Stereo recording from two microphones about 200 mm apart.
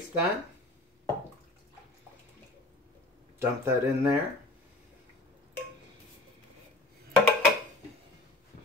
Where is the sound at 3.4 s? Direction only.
15° right (ahead or behind).